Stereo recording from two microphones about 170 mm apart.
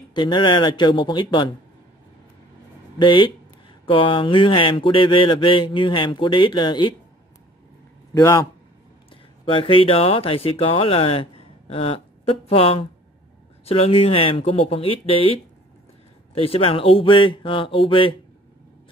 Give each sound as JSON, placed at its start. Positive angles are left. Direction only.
{"t": 0.1, "sound": "speech", "side_deg": 25}
{"t": 3.0, "sound": "speech", "side_deg": 30}
{"t": 8.1, "sound": "speech", "side_deg": 20}
{"t": 9.1, "sound": "speech", "side_deg": 30}
{"t": 16.3, "sound": "speech", "side_deg": 35}